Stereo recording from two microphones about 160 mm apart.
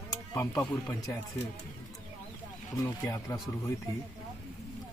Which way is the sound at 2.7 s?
20° left (ahead or behind).